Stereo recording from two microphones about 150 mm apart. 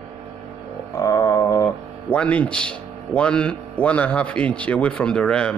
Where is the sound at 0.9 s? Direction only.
20° left (ahead or behind).